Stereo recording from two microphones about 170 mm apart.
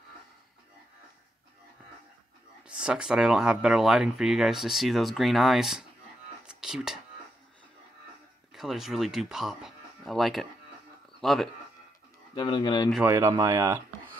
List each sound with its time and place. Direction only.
2.6 s speech: 5° right (ahead or behind)
6.4 s whispering: 5° right (ahead or behind)
8.5 s speech: centre (ahead or behind)
12.4 s speech: 30° left (ahead or behind)
13.0 s speech: 15° right (ahead or behind)